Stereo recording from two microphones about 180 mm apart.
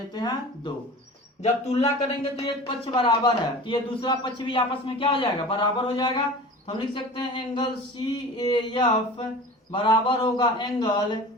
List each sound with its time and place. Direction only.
0.1 s a man's voice: 25° left (ahead or behind)
1.4 s a man's voice: 40° left (ahead or behind)